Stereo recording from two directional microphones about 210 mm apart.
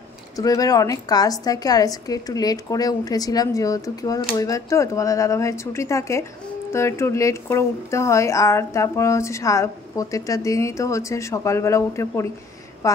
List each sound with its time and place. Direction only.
0.4 s a woman's voice: 15° left (ahead or behind)